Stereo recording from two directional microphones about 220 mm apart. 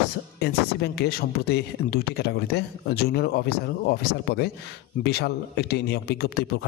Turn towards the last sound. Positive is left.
turn(degrees=45)  # may be behind; listen again after turning